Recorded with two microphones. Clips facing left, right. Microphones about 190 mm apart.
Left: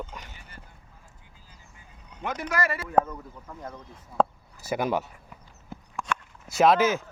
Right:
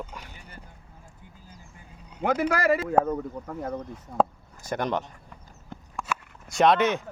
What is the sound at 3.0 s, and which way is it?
Speech, 5° right (ahead or behind).